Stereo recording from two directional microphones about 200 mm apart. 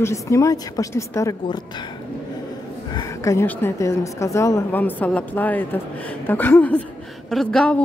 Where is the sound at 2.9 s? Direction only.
15° left (ahead or behind).